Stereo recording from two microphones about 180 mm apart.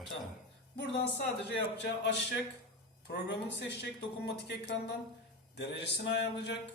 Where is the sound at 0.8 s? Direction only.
70° left (ahead or behind).